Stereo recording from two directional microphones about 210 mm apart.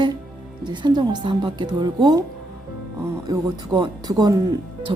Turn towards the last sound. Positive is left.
turn(degrees=-25)  # may be behind; listen again after turning